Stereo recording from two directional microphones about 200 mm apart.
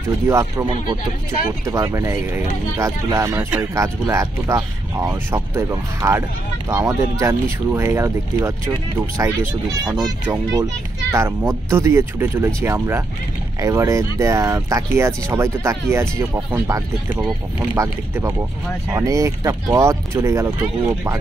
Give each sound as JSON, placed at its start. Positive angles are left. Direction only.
{"t": 0.3, "sound": "speech", "side_deg": -15}